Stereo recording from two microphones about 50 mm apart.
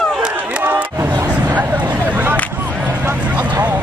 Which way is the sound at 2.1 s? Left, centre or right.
Right.